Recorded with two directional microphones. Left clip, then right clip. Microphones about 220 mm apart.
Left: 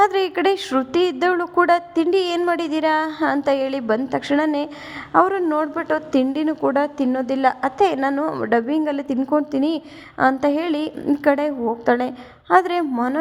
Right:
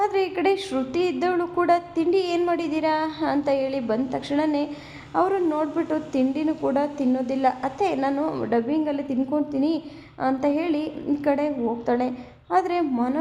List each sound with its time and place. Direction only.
0.0 s a woman's voice: 30° left (ahead or behind)